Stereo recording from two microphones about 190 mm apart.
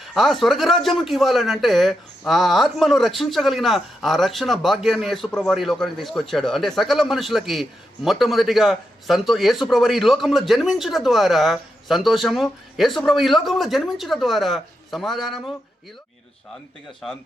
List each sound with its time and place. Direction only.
0.0 s a man's voice: centre (ahead or behind)